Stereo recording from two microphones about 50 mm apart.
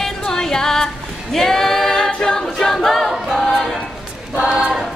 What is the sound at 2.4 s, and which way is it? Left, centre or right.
A capella, centre.